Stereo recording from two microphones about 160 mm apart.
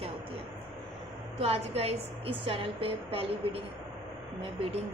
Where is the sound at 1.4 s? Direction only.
40° right (ahead or behind).